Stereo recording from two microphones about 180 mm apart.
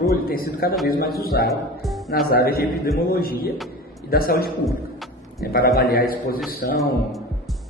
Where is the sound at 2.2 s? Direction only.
55° left (ahead or behind).